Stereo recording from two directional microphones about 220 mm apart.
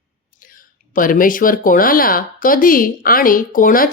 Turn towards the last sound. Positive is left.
turn(degrees=40)  # may be behind; listen again after turning